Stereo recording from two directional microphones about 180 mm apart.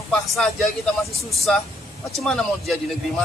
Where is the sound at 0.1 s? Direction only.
5° left (ahead or behind).